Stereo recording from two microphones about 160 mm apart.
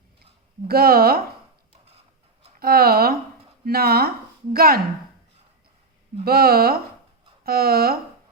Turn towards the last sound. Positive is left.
turn(degrees=-75)  # may be behind; listen again after turning